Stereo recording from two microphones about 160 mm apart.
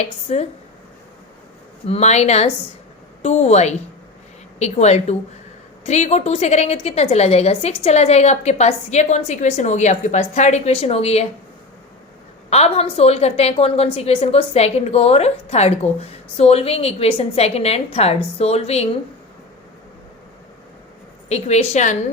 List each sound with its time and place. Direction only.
0.0 s a woman's voice: 40° left (ahead or behind)
1.9 s a woman's voice: 45° left (ahead or behind)
12.5 s a woman's voice: 40° left (ahead or behind)
21.2 s a woman's voice: 45° left (ahead or behind)